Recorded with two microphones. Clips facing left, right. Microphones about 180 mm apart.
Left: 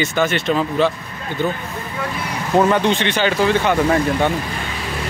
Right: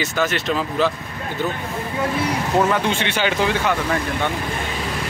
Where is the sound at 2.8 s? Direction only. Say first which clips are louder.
Left 3 dB; 10° right (ahead or behind).